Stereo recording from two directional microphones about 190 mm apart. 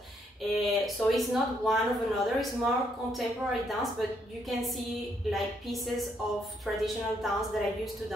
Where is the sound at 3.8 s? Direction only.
Centre (ahead or behind).